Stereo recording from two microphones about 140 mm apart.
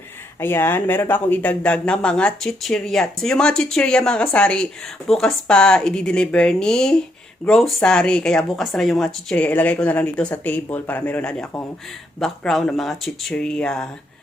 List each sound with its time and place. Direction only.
0.3 s speech: 15° left (ahead or behind)